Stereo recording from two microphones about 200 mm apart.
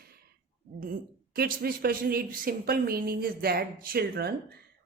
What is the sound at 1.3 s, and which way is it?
Speech, 50° right (ahead or behind).